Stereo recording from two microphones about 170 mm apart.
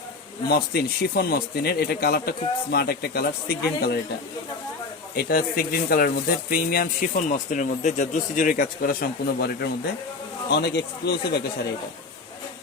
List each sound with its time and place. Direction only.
0.5 s speech: 70° left (ahead or behind)
5.1 s speech: 60° left (ahead or behind); by 11.4 s 80° left